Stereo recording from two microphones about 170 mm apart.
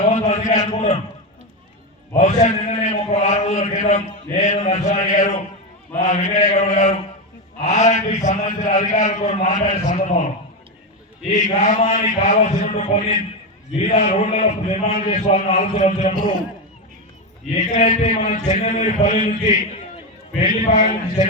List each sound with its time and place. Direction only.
0.1 s a sound: 45° left (ahead or behind)
2.1 s a man's voice: 45° left (ahead or behind)
11.6 s a man's voice: 45° left (ahead or behind)
17.5 s a man's voice: 45° left (ahead or behind)